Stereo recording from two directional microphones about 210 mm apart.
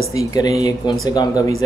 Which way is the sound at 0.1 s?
15° left (ahead or behind).